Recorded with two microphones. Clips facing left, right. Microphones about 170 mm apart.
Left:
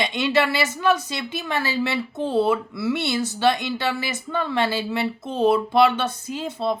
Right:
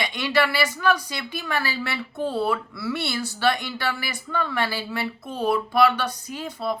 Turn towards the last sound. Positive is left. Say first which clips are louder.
# left 3 dB
turn(degrees=25)  # may be behind; listen again after turning